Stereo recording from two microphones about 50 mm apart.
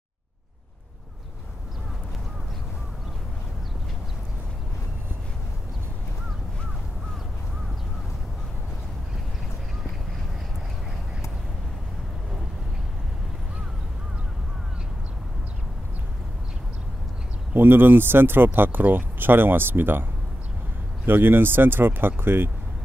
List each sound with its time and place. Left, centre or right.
17.6 s speech: right